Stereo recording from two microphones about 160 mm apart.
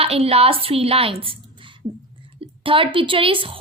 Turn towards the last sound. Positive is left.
turn(degrees=-35)  # may be behind; listen again after turning